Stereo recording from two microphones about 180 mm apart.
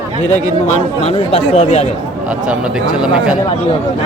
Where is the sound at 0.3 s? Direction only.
40° left (ahead or behind).